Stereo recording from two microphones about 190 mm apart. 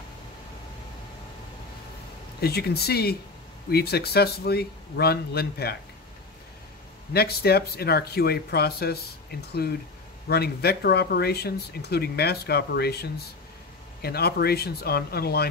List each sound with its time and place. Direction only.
2.4 s speech: 55° left (ahead or behind)
7.2 s speech: 55° left (ahead or behind)